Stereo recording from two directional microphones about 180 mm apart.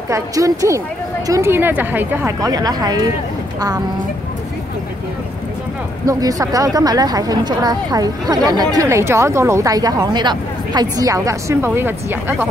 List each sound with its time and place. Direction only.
0.1 s speech: 15° right (ahead or behind)
6.0 s a woman's voice: 20° right (ahead or behind)